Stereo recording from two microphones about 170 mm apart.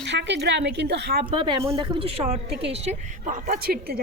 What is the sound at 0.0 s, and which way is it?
A woman's voice, 90° right.